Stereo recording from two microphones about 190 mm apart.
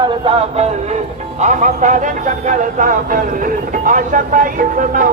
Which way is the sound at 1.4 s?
40° right (ahead or behind).